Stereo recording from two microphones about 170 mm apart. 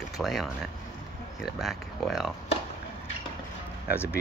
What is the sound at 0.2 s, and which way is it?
Speech, centre (ahead or behind).